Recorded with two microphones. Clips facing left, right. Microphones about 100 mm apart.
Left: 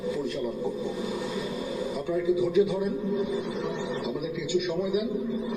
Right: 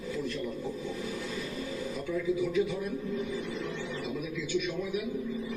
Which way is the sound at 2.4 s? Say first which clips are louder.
Left 6 dB; 15° left (ahead or behind).